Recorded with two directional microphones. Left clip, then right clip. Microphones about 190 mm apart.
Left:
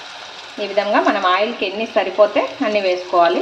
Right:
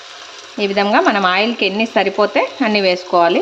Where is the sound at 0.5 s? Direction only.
50° right (ahead or behind).